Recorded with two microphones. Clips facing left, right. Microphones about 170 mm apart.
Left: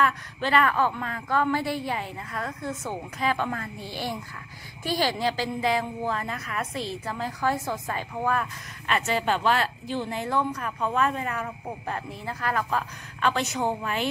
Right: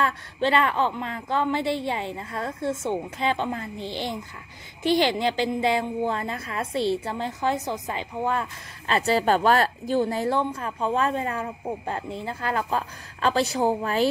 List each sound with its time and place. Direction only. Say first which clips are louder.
0.0 s a woman's voice: right 2 dB; 25° right (ahead or behind)